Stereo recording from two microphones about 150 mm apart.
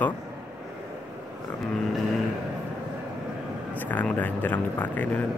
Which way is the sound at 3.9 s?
10° left (ahead or behind).